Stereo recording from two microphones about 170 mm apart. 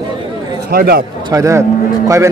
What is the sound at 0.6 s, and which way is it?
Speech, 65° right (ahead or behind).